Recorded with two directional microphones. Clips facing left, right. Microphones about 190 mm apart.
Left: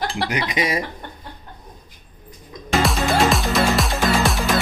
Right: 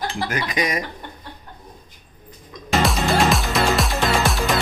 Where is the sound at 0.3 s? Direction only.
25° left (ahead or behind).